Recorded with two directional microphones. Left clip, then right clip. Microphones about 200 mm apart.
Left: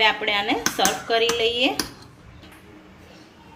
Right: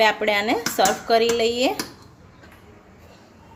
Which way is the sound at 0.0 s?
55° right (ahead or behind).